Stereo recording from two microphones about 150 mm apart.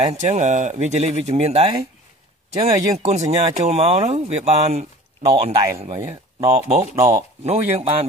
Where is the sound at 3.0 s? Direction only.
45° right (ahead or behind).